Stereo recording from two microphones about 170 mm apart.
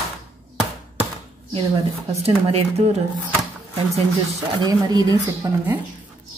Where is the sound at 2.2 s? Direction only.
35° right (ahead or behind).